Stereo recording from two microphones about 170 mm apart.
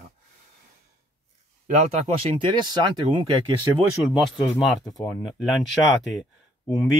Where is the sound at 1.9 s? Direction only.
30° right (ahead or behind).